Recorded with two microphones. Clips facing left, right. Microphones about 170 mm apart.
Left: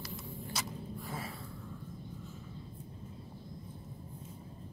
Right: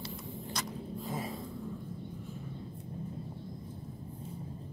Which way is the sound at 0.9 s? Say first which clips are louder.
Right 7 dB; 20° right (ahead or behind).